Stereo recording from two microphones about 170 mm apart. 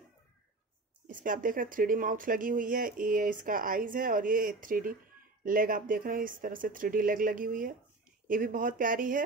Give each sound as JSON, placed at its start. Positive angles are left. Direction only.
{"t": 1.0, "sound": "speech", "side_deg": -55}